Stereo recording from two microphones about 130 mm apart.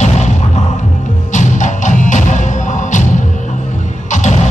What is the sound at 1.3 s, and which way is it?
Music, 70° left (ahead or behind).